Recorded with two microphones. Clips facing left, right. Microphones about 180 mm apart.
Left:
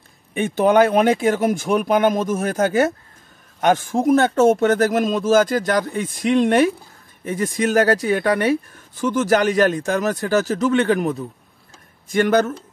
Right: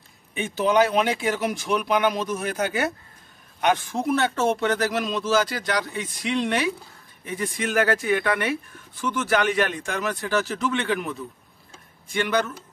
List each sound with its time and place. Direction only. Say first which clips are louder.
0.3 s a man's voice: left 6 dB; 55° left (ahead or behind)